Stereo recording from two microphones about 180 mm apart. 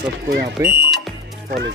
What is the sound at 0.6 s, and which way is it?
Speech, 15° right (ahead or behind).